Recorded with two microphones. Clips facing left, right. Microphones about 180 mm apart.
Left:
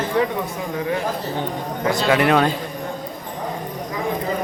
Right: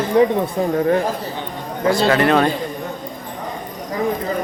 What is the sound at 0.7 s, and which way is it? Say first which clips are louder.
Speech: right 6 dB; 50° right (ahead or behind).